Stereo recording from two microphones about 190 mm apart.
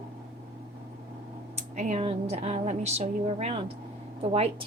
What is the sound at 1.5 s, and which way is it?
A woman's voice, 40° right (ahead or behind).